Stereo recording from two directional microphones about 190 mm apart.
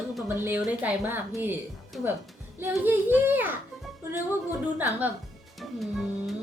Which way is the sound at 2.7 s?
10° right (ahead or behind).